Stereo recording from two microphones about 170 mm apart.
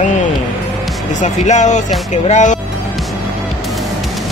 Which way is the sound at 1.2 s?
45° left (ahead or behind).